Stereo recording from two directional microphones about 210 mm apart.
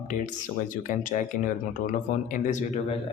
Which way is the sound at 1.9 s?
35° left (ahead or behind).